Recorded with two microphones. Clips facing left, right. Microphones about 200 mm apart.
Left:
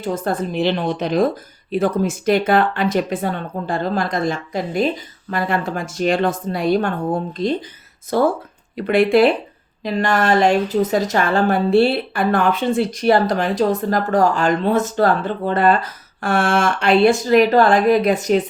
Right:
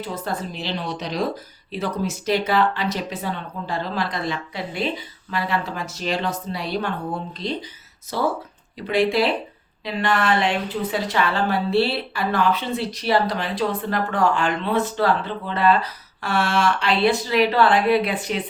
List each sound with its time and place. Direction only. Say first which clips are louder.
0.0 s a woman's voice: left 6 dB; 50° left (ahead or behind)